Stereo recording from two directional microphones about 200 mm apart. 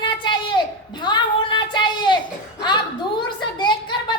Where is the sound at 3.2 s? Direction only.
20° left (ahead or behind).